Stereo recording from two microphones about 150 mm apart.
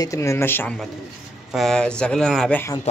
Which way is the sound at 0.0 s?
20° left (ahead or behind).